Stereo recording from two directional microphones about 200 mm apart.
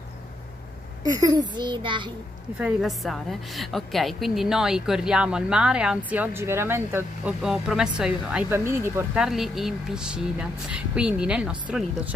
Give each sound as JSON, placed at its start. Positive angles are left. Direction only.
{"t": 1.1, "sound": "a child's voice", "side_deg": -20}
{"t": 2.6, "sound": "a woman's voice", "side_deg": 0}